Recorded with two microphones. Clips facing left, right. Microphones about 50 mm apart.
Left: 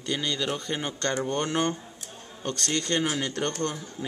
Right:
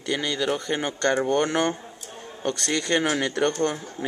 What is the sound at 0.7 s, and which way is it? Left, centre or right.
Speech, right.